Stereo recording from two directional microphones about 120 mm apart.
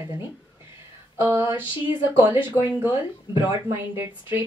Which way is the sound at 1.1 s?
15° right (ahead or behind).